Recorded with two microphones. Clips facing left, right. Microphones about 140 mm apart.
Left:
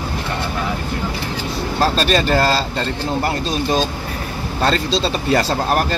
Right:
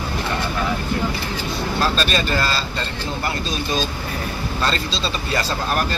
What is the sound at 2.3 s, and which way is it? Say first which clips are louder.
Speech: left 6 dB; 45° left (ahead or behind).